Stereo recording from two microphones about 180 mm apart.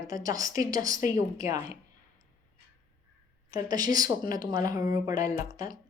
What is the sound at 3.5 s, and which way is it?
Speech, 20° right (ahead or behind).